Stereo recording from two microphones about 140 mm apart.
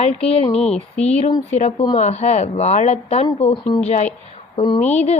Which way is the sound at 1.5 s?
55° left (ahead or behind).